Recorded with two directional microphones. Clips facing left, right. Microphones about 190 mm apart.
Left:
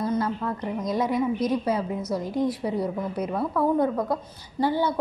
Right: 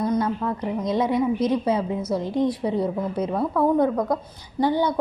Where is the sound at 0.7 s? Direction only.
20° right (ahead or behind).